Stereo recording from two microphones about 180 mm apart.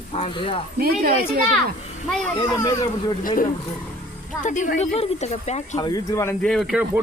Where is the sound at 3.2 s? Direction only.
50° left (ahead or behind).